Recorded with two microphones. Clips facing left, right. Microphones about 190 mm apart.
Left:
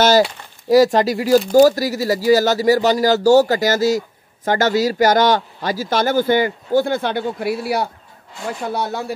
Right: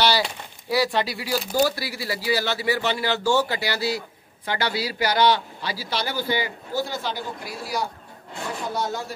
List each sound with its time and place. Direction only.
0.7 s a man's voice: 45° left (ahead or behind); by 9.0 s 60° left (ahead or behind)